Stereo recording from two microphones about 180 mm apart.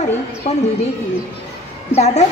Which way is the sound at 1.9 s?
40° left (ahead or behind).